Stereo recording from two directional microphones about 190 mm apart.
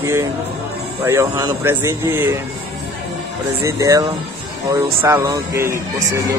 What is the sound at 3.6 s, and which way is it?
Speech, 15° right (ahead or behind).